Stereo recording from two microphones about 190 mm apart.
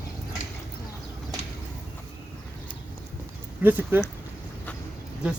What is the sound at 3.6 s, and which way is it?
Speech, 10° right (ahead or behind).